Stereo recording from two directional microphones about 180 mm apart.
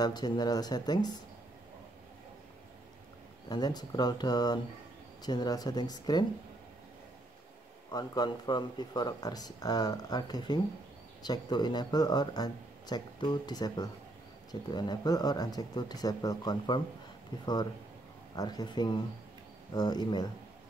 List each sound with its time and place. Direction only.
0.0 s speech: 25° left (ahead or behind)
3.4 s speech: 20° left (ahead or behind)
7.9 s speech: 20° left (ahead or behind)